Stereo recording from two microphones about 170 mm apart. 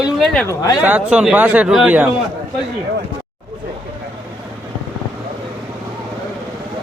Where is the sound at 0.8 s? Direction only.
10° right (ahead or behind).